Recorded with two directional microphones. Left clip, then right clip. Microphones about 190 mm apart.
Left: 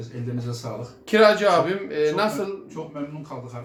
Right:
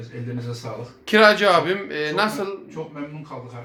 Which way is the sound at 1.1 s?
10° right (ahead or behind).